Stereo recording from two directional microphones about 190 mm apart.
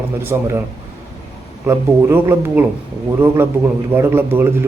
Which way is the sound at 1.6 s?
15° right (ahead or behind).